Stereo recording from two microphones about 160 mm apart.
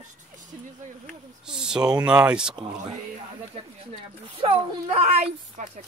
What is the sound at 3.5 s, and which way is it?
Speech, 40° right (ahead or behind).